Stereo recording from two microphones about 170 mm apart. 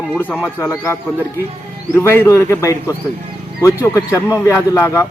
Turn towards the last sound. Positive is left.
turn(degrees=15)  # may be behind; listen again after turning